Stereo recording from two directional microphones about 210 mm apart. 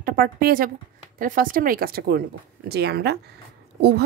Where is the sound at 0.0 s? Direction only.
45° right (ahead or behind).